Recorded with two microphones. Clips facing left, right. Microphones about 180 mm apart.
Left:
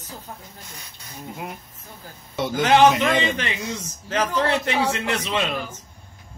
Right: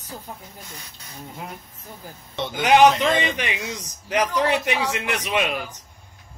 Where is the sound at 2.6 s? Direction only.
15° right (ahead or behind).